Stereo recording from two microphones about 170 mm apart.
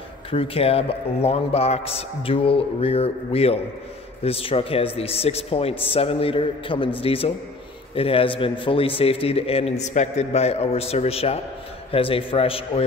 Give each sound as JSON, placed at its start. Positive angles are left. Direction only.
{"t": 0.3, "sound": "a man's voice", "side_deg": 35}